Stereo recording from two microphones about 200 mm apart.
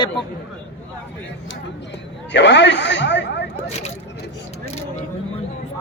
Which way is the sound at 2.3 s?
60° left (ahead or behind).